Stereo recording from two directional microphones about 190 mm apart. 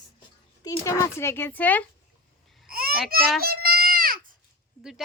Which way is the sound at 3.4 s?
55° right (ahead or behind).